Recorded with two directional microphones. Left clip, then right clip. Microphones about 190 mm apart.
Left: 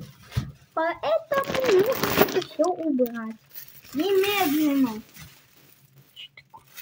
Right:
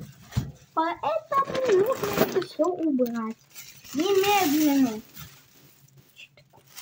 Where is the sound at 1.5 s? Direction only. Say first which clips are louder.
Left 4 dB; 60° left (ahead or behind).